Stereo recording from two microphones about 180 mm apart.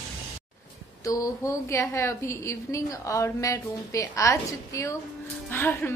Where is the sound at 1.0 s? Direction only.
20° left (ahead or behind).